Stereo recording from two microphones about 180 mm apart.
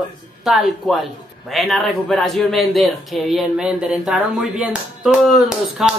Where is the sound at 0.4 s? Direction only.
Centre (ahead or behind).